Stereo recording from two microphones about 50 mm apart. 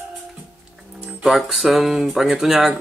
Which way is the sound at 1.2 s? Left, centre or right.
Centre.